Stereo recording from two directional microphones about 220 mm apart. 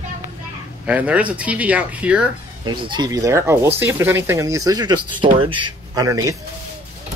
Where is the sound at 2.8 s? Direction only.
20° right (ahead or behind).